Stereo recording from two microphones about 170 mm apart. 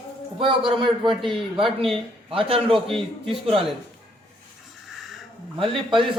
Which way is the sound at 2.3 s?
30° right (ahead or behind).